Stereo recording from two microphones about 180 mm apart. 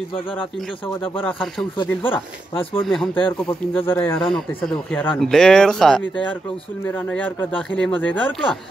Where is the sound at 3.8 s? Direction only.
15° left (ahead or behind).